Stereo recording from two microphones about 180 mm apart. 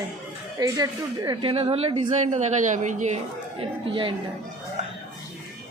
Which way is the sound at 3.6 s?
30° right (ahead or behind).